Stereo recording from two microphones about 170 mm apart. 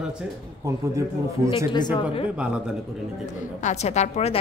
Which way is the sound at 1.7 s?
25° left (ahead or behind).